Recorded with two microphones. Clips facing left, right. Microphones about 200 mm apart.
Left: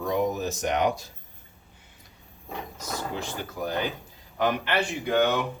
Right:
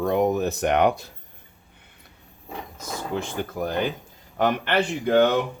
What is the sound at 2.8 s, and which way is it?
Speech, 55° right (ahead or behind).